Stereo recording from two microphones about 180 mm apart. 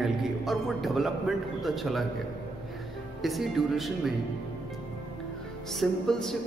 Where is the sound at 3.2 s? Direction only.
Centre (ahead or behind).